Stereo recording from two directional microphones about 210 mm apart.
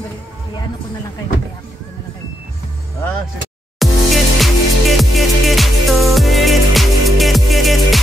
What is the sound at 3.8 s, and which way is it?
Music, centre (ahead or behind).